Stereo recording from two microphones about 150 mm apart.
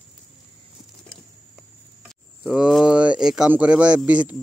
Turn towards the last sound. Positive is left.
turn(degrees=-10)  # may be behind; listen again after turning